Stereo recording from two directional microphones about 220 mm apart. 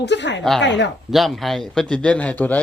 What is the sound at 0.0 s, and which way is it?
Speech, 50° left (ahead or behind).